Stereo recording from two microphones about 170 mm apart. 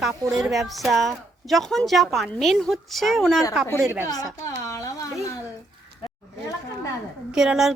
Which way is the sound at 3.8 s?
15° right (ahead or behind).